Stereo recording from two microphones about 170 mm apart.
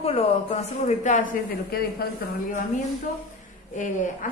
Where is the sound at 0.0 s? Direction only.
35° left (ahead or behind).